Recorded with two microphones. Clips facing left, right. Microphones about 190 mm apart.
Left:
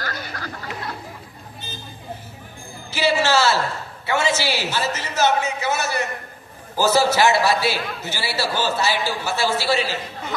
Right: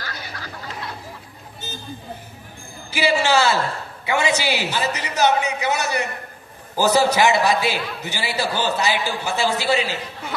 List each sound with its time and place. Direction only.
0.0 s snicker: 50° left (ahead or behind)
2.9 s a sound: 15° right (ahead or behind)
4.0 s a man's voice: 15° right (ahead or behind)